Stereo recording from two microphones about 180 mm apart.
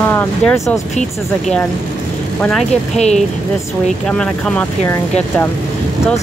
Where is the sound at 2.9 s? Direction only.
40° left (ahead or behind).